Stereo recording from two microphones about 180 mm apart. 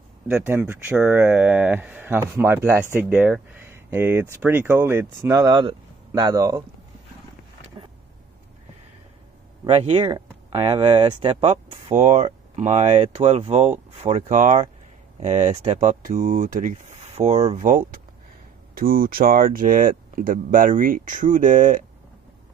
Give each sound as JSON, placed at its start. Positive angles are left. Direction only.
{"t": 0.3, "sound": "speech", "side_deg": -15}
{"t": 9.7, "sound": "speech", "side_deg": -35}
{"t": 11.9, "sound": "speech", "side_deg": -45}